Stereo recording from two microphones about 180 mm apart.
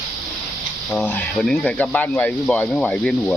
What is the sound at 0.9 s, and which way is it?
Speech, 10° left (ahead or behind).